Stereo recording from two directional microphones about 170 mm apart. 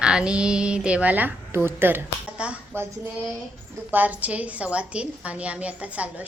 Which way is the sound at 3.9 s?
10° right (ahead or behind).